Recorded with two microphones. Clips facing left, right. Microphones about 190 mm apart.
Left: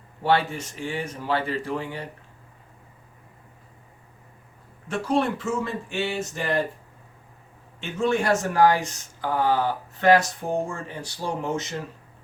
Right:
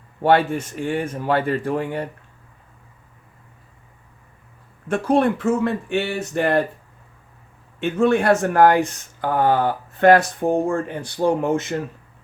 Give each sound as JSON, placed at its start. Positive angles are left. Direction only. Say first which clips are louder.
{"t": 0.2, "sound": "speech", "louder": "right 6 dB", "side_deg": -55}
{"t": 4.9, "sound": "speech", "louder": "right 6 dB", "side_deg": -55}
{"t": 7.8, "sound": "speech", "louder": "right 6 dB", "side_deg": -60}